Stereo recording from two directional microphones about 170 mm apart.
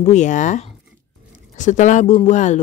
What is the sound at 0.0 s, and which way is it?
Speech, 45° left (ahead or behind).